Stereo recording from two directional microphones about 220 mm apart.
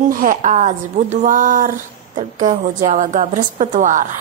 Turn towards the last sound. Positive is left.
turn(degrees=-35)  # may be behind; listen again after turning